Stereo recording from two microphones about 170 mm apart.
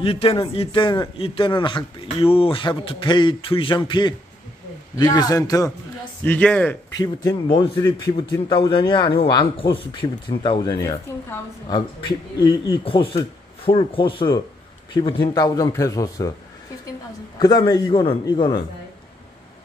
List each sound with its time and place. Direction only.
0.0 s a man's voice: 35° left (ahead or behind)
6.2 s speech: 10° left (ahead or behind)
7.0 s a man's voice: 25° left (ahead or behind)
17.4 s a man's voice: 25° left (ahead or behind)